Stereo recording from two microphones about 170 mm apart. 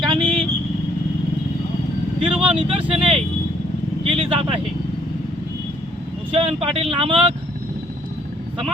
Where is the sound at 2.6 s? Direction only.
30° right (ahead or behind).